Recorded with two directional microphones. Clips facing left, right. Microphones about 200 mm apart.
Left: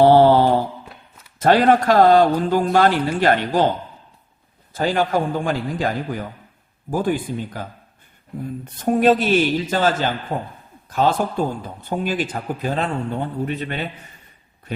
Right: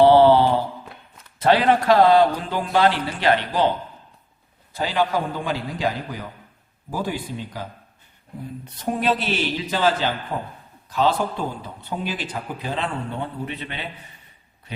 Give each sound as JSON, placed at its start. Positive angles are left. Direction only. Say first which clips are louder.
{"t": 0.0, "sound": "mantra", "louder": "left 1 dB", "side_deg": 45}
{"t": 1.4, "sound": "speech", "louder": "left 3 dB", "side_deg": 45}
{"t": 4.7, "sound": "speech", "louder": "left 3 dB", "side_deg": 50}